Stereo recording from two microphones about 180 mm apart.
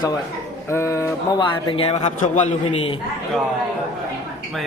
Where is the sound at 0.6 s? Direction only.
15° left (ahead or behind).